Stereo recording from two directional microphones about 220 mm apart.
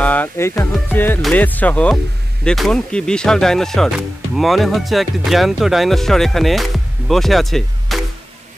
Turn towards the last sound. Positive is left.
turn(degrees=0)  # may be behind; listen again after turning